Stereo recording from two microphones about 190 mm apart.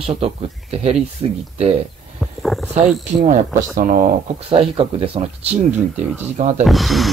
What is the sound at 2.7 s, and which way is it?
Speech, 35° right (ahead or behind).